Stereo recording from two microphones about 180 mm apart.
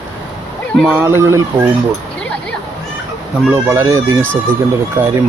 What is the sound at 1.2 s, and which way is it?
Speech, 15° right (ahead or behind).